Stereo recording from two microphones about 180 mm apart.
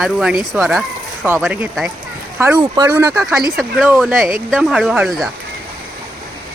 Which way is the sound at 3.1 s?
5° right (ahead or behind).